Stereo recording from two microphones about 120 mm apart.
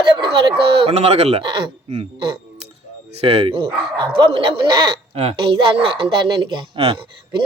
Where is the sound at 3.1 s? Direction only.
55° right (ahead or behind).